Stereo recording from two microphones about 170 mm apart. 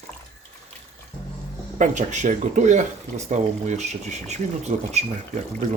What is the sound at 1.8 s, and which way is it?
Speech, 45° right (ahead or behind).